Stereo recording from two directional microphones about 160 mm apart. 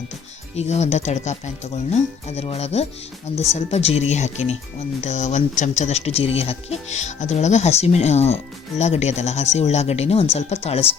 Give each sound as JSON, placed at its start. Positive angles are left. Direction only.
{"t": 0.5, "sound": "speech", "side_deg": 45}